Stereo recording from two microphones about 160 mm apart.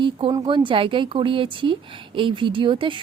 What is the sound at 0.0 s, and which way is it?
A woman's voice, 30° right (ahead or behind).